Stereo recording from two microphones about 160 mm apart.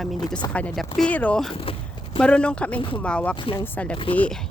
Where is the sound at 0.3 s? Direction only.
25° left (ahead or behind).